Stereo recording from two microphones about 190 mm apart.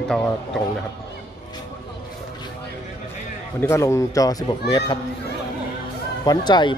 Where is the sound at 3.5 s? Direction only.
15° left (ahead or behind).